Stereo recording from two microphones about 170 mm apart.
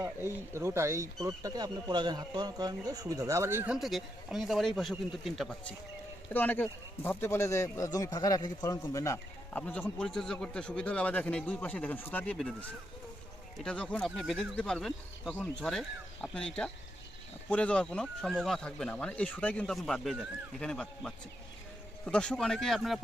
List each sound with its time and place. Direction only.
0.0 s speech: 15° right (ahead or behind)
3.8 s speech: centre (ahead or behind)